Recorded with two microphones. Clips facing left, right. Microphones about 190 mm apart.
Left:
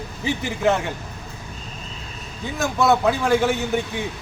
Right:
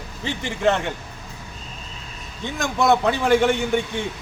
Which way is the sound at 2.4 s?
5° left (ahead or behind).